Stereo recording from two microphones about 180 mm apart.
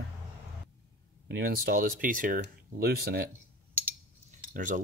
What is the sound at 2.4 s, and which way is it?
Speech, 60° right (ahead or behind).